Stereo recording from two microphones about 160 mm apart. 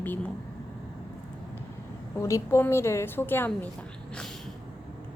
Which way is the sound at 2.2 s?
15° left (ahead or behind).